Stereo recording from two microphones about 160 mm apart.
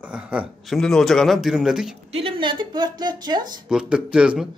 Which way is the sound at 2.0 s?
35° right (ahead or behind).